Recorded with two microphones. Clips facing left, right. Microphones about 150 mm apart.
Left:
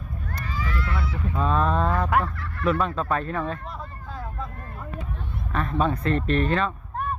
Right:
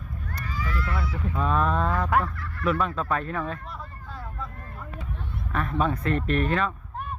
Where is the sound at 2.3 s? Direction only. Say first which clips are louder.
Left 2 dB; 60° left (ahead or behind).